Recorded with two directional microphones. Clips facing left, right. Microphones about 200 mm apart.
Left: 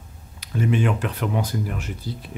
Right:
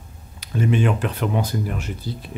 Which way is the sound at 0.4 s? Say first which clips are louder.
Right 2 dB; 30° right (ahead or behind).